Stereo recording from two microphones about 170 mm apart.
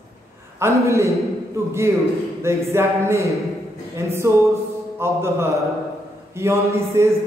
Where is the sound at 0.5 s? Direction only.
15° right (ahead or behind).